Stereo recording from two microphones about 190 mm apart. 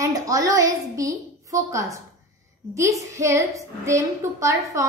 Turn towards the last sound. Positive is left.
turn(degrees=-15)  # may be behind; listen again after turning